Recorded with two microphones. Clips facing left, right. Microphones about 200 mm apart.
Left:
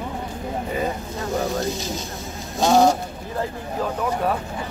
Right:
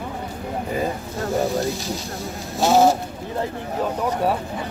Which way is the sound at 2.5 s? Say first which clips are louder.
Even; 15° left (ahead or behind).